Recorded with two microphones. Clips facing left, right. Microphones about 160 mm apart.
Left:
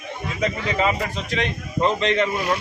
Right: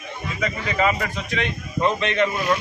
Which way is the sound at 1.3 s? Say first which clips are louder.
Left 1 dB; 35° left (ahead or behind).